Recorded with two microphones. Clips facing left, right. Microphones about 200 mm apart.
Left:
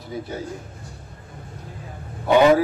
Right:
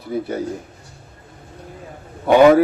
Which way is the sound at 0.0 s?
60° right (ahead or behind).